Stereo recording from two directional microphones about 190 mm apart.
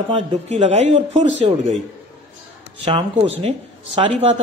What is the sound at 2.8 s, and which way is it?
Speech, 25° right (ahead or behind).